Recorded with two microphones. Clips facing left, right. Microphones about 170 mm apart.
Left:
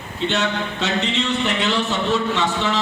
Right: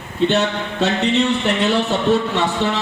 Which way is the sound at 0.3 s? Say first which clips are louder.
Right 1 dB; 60° right (ahead or behind).